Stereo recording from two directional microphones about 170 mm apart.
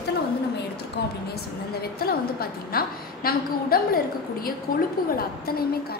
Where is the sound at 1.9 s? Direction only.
60° left (ahead or behind).